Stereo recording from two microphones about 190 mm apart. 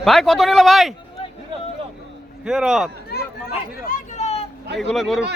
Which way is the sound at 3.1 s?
55° left (ahead or behind).